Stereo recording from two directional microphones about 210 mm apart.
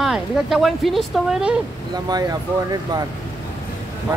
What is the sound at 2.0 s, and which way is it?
Speech, 20° right (ahead or behind).